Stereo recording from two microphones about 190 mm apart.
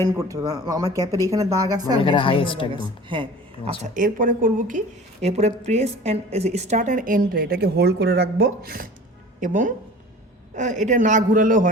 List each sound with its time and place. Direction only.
0.0 s speech: 15° right (ahead or behind)
2.0 s a woman's voice: 25° left (ahead or behind)
2.7 s a woman's voice: 25° right (ahead or behind)
3.8 s a woman's voice: 40° right (ahead or behind)